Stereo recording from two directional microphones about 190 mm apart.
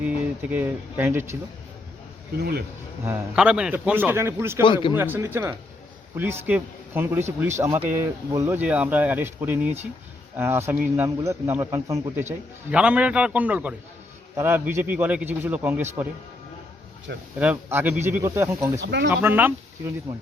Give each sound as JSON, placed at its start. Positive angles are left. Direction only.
{"t": 0.5, "sound": "a man's voice", "side_deg": -10}
{"t": 2.4, "sound": "speech", "side_deg": -55}
{"t": 3.0, "sound": "a man's voice", "side_deg": -10}
{"t": 4.6, "sound": "speech", "side_deg": 25}
{"t": 4.9, "sound": "a man's voice", "side_deg": -10}
{"t": 17.3, "sound": "a man's voice", "side_deg": -10}
{"t": 18.8, "sound": "speech", "side_deg": -65}
{"t": 19.1, "sound": "a man's voice", "side_deg": -10}